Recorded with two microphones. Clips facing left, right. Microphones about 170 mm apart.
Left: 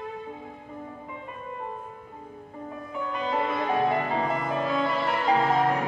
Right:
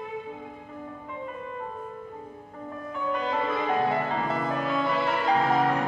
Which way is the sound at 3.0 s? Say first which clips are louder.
Right 1 dB; centre (ahead or behind).